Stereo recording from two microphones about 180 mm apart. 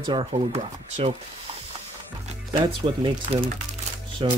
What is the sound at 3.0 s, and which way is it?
Speech, 25° right (ahead or behind).